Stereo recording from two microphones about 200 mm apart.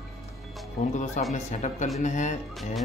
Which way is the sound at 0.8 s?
35° left (ahead or behind).